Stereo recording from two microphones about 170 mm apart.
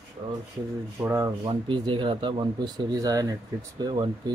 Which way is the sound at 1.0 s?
20° right (ahead or behind).